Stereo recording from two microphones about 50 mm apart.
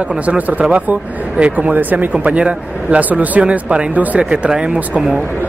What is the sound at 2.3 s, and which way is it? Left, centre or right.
Speech, right.